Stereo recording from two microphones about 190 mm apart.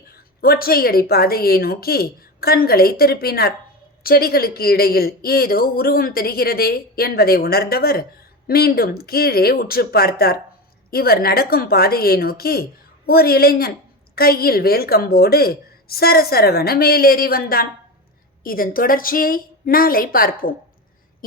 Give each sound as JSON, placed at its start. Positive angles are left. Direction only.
{"t": 0.1, "sound": "speech", "side_deg": 55}